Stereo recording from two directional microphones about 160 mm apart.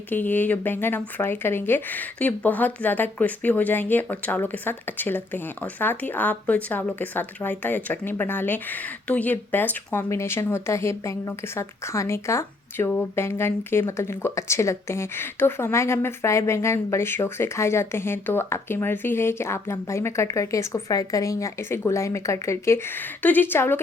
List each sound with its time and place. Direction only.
0.1 s speech: 10° left (ahead or behind)